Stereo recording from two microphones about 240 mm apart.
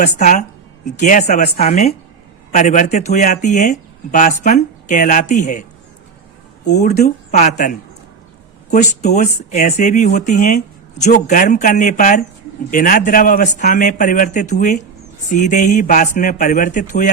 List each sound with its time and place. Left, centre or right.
0.2 s speech: left
6.7 s speech: left
8.7 s speech: left